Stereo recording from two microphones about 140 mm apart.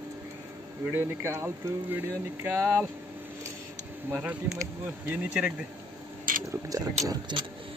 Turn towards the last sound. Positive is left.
turn(degrees=-35)  # may be behind; listen again after turning